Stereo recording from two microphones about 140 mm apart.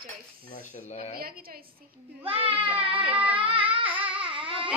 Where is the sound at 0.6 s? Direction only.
55° left (ahead or behind).